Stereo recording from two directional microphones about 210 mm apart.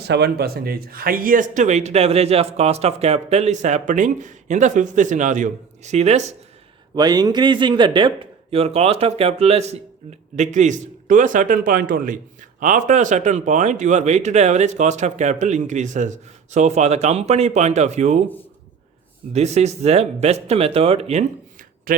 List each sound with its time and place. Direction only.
0.1 s a man's voice: 50° right (ahead or behind); by 6.2 s 30° right (ahead or behind)
6.9 s a man's voice: 20° right (ahead or behind)
19.3 s a man's voice: 30° right (ahead or behind)
21.9 s speech: 40° right (ahead or behind)